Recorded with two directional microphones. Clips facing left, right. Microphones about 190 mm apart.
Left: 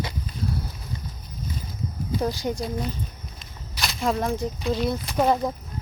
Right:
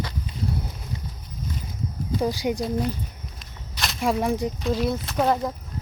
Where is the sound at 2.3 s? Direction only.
15° right (ahead or behind).